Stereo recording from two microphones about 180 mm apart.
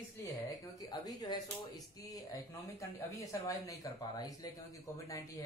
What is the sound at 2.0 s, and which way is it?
A man's voice, 20° left (ahead or behind).